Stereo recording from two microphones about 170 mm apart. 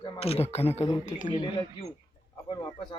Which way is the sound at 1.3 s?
25° left (ahead or behind).